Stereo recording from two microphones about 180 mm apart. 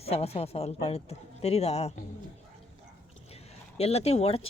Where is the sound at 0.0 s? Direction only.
35° left (ahead or behind).